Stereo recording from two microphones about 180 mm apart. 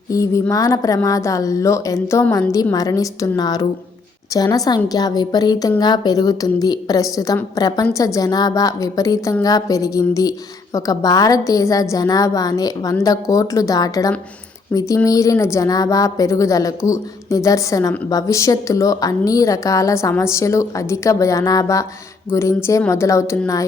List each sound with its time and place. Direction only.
0.1 s a woman's voice: 15° left (ahead or behind)